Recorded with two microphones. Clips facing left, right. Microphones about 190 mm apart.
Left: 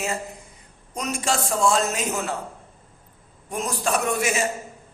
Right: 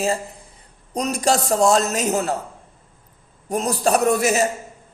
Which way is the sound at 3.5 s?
35° right (ahead or behind).